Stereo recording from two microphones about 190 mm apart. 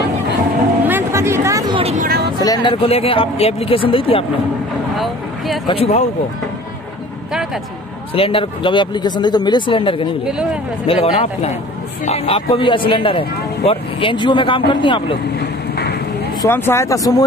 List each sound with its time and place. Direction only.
0.8 s a sound: 10° right (ahead or behind); by 2.0 s 30° right (ahead or behind)
2.4 s speech: 20° left (ahead or behind)
4.9 s vehicle: centre (ahead or behind)
5.7 s speech: 30° left (ahead or behind)
8.1 s speech: 30° left (ahead or behind)
10.2 s speech: 5° right (ahead or behind)
10.9 s speech: 35° left (ahead or behind)
15.3 s vehicle: 55° left (ahead or behind)
16.3 s speech: 10° left (ahead or behind)